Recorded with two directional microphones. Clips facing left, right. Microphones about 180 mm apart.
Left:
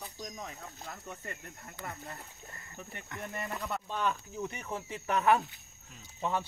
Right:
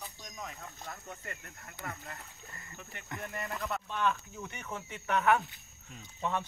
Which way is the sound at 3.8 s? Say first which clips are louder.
Right 2 dB; 35° left (ahead or behind).